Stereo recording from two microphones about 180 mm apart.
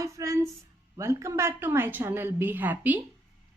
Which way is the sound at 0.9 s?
15° right (ahead or behind).